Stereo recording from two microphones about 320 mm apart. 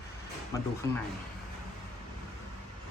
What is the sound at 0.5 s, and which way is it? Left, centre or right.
Speech, centre.